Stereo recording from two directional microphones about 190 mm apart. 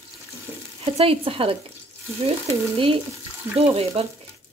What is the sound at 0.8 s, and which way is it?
Frying, 30° right (ahead or behind).